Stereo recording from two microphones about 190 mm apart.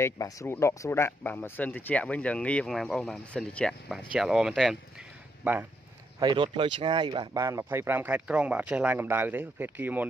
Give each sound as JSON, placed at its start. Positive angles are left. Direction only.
{"t": 0.0, "sound": "speech", "side_deg": 15}
{"t": 6.1, "sound": "speech", "side_deg": -25}